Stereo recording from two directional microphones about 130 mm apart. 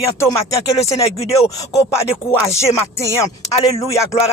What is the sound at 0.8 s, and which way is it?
Speech, 50° left (ahead or behind).